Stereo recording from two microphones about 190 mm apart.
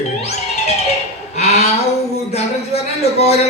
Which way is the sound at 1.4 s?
35° left (ahead or behind).